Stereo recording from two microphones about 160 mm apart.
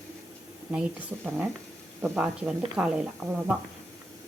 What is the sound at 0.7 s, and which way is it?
Speech, 10° right (ahead or behind).